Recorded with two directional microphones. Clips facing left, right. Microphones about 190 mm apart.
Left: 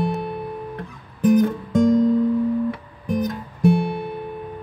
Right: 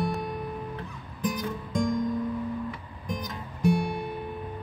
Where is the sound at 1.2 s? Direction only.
60° left (ahead or behind).